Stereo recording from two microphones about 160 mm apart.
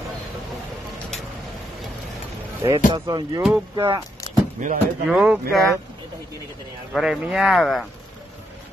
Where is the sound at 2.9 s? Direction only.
25° right (ahead or behind).